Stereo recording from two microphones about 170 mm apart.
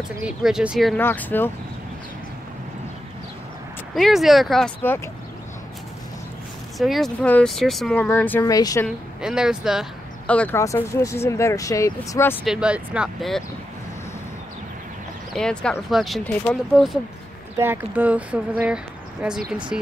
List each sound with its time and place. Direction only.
0.2 s speech: 5° right (ahead or behind)
0.9 s speech: 10° left (ahead or behind)
3.9 s speech: centre (ahead or behind)
6.8 s speech: centre (ahead or behind); by 8.8 s 20° left (ahead or behind)
8.8 s speech: 5° right (ahead or behind)
10.2 s speech: 10° left (ahead or behind)
12.4 s speech: 5° right (ahead or behind)
15.3 s speech: 5° left (ahead or behind)
17.6 s speech: 10° right (ahead or behind)